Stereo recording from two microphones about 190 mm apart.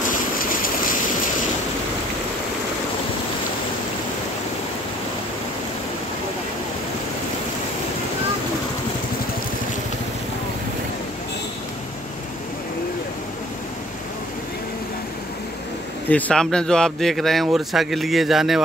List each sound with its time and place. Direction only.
0.4 s stream: 50° left (ahead or behind)
16.1 s speech: 5° left (ahead or behind)